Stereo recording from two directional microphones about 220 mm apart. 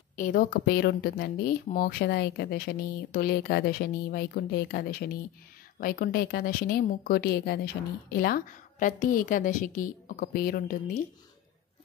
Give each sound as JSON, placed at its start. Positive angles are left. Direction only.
{"t": 0.1, "sound": "a woman's voice", "side_deg": 40}